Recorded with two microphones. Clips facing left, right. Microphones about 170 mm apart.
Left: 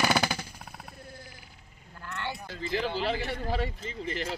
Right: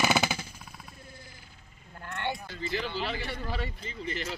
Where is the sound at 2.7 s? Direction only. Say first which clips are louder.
Left 4 dB; 50° left (ahead or behind).